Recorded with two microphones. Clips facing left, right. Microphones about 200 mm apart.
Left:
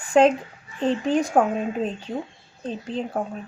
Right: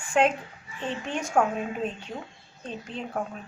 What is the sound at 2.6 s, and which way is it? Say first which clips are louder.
Speech: left 7 dB; 35° left (ahead or behind).